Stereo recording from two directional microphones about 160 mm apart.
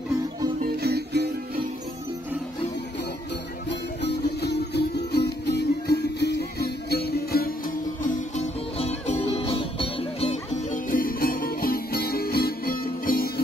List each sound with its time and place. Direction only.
0.7 s music: 85° right
3.6 s music: 90° left; by 8.5 s 55° left (ahead or behind)
8.7 s music: 40° left (ahead or behind); by 13.3 s 65° left (ahead or behind)